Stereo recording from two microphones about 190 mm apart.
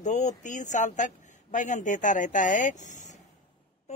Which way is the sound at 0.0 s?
40° left (ahead or behind).